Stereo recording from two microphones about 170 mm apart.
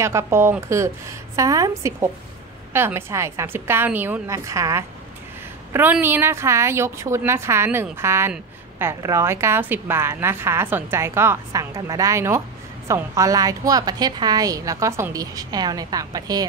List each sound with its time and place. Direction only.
0.0 s a woman's voice: 15° right (ahead or behind)